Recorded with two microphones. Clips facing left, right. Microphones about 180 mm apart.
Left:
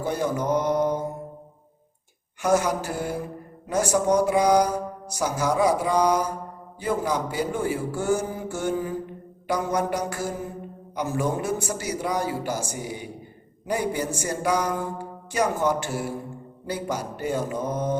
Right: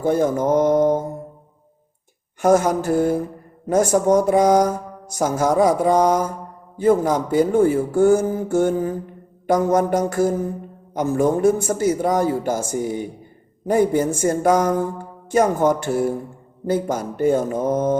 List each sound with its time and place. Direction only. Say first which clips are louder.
0.0 s speech: right 7 dB; 50° right (ahead or behind)
2.4 s speech: right 6 dB; 50° right (ahead or behind)